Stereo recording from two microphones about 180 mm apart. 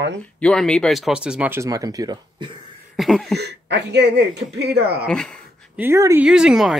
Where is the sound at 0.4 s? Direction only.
5° left (ahead or behind); by 2.5 s 25° right (ahead or behind).